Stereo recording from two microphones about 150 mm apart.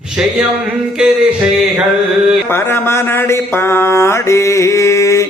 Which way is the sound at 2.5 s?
15° left (ahead or behind).